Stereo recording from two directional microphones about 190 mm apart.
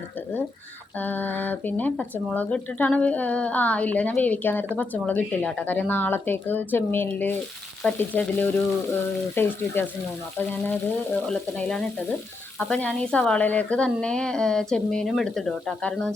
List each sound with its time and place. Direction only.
0.9 s speech: 10° left (ahead or behind)